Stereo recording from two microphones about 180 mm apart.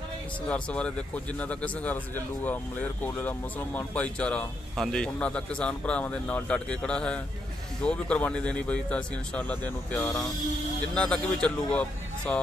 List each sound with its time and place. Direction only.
0.5 s a man's voice: 5° left (ahead or behind)